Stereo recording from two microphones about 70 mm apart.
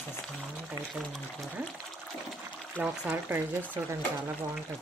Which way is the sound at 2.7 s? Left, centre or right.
Centre.